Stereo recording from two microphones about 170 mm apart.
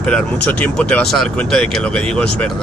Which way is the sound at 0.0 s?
5° left (ahead or behind).